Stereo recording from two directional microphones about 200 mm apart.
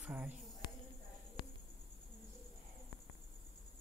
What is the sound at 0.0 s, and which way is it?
Speech, 5° right (ahead or behind).